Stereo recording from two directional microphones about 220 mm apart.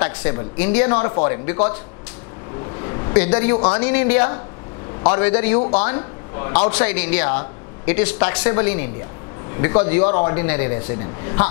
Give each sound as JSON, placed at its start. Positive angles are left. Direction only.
{"t": 0.2, "sound": "speech", "side_deg": 15}
{"t": 2.8, "sound": "a sound", "side_deg": 20}
{"t": 3.5, "sound": "speech", "side_deg": 25}
{"t": 5.6, "sound": "speech", "side_deg": 25}
{"t": 7.2, "sound": "speech", "side_deg": 25}
{"t": 7.9, "sound": "speech", "side_deg": 10}
{"t": 10.3, "sound": "speech", "side_deg": 10}